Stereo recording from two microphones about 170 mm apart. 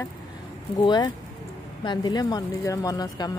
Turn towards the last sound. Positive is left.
turn(degrees=20)  # may be behind; listen again after turning